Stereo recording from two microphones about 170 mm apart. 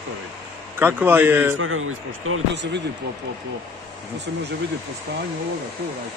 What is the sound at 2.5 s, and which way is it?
Speech, 90° right.